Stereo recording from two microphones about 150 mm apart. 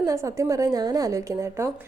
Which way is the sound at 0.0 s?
20° right (ahead or behind).